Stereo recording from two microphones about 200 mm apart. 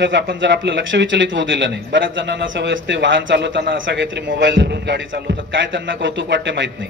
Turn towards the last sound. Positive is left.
turn(degrees=-65)  # may be behind; listen again after turning